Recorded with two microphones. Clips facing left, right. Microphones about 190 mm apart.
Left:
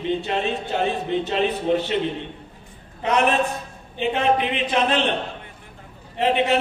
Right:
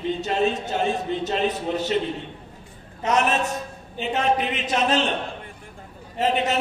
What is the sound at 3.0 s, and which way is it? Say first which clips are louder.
A man's voice: left 2 dB; 40° right (ahead or behind).